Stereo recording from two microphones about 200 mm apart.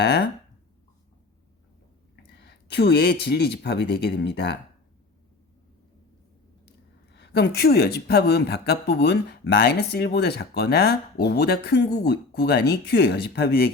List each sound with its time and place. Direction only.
0.0 s speech: 55° left (ahead or behind)
2.3 s speech: 55° left (ahead or behind)
7.1 s speech: 55° left (ahead or behind)